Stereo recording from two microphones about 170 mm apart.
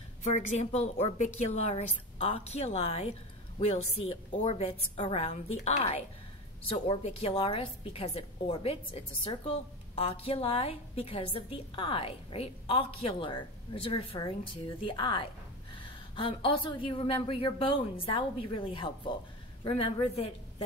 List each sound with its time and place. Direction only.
0.2 s a woman's voice: 45° left (ahead or behind)